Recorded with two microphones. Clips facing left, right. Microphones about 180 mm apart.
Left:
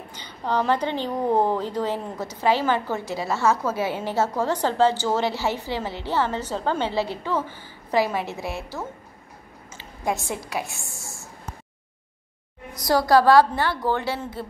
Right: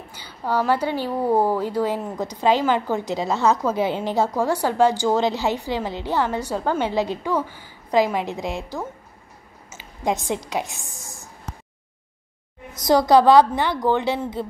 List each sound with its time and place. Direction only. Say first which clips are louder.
0.1 s a woman's voice: right 1 dB; 10° right (ahead or behind)
12.7 s a woman's voice: right 3 dB; 20° right (ahead or behind)